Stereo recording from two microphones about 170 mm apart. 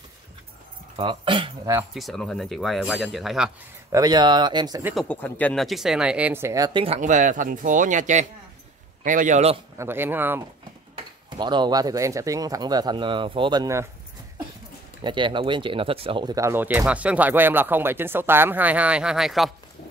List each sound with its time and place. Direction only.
0.9 s speech: 30° right (ahead or behind)
2.0 s speech: centre (ahead or behind)
3.9 s speech: 25° right (ahead or behind)
4.9 s speech: 10° left (ahead or behind); by 7.0 s 30° right (ahead or behind)
7.0 s speech: 50° right (ahead or behind)
9.8 s speech: 15° right (ahead or behind)
11.2 s speech: 25° right (ahead or behind)
15.0 s speech: 30° right (ahead or behind); by 19.5 s centre (ahead or behind)